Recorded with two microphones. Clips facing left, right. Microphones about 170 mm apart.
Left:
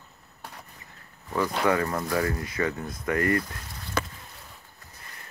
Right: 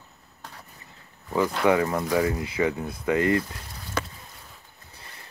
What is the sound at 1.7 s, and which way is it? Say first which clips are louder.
Speech: right 5 dB; 10° right (ahead or behind).